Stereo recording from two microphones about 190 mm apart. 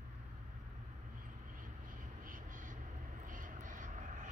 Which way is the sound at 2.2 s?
45° right (ahead or behind).